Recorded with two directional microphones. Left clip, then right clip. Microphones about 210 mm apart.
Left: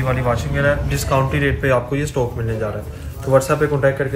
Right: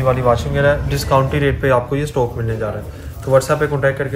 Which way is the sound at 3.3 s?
Centre (ahead or behind).